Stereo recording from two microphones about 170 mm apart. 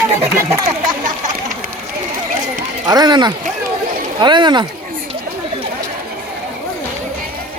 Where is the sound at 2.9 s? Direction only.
25° right (ahead or behind).